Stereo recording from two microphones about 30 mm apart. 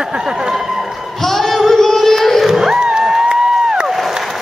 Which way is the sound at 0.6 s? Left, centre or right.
Centre.